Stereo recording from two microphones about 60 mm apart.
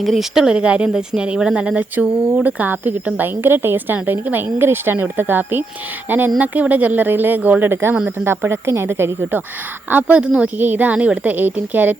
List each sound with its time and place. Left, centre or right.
0.0 s speech: centre
0.3 s speech: centre
2.5 s speech: right
7.7 s a woman's voice: right
9.9 s speech: right
10.6 s speech: right